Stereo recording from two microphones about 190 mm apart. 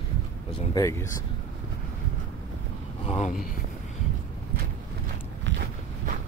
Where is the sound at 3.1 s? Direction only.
35° left (ahead or behind).